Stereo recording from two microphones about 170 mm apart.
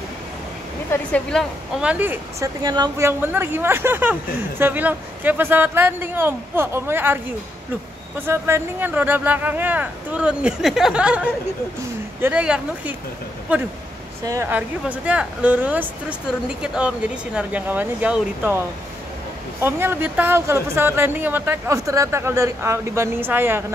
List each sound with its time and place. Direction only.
0.9 s speech: 15° left (ahead or behind)
1.3 s speech: centre (ahead or behind)
8.3 s speech: 15° right (ahead or behind)
14.2 s speech: 15° right (ahead or behind)
19.6 s speech: 15° right (ahead or behind)